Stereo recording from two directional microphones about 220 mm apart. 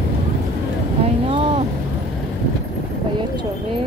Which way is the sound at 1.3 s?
25° right (ahead or behind).